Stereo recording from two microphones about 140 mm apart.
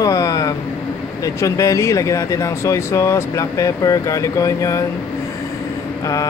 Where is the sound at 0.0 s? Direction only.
25° left (ahead or behind).